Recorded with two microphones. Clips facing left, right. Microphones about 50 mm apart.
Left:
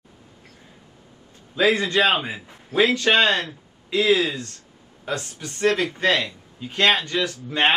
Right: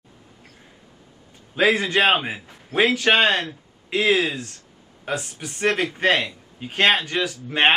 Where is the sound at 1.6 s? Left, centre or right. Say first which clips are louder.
Even; right.